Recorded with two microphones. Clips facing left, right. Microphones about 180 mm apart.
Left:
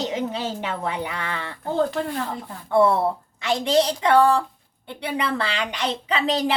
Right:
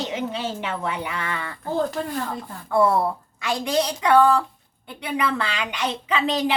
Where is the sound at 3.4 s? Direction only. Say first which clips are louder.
Left 3 dB; 25° left (ahead or behind).